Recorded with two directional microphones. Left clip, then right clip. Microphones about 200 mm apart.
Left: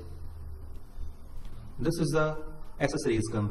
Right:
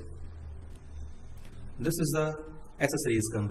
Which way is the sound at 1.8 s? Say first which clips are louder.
Left 1 dB; 10° right (ahead or behind).